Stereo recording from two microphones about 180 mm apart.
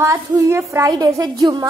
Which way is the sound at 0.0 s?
15° right (ahead or behind).